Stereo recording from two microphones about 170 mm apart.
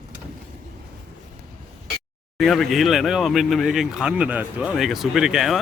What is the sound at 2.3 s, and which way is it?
Speech, centre (ahead or behind).